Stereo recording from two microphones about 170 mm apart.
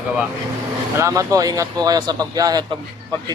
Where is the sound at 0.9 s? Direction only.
20° right (ahead or behind).